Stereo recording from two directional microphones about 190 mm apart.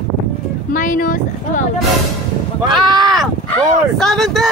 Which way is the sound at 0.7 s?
45° left (ahead or behind).